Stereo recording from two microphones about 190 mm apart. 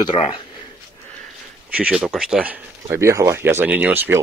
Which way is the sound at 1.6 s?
5° right (ahead or behind).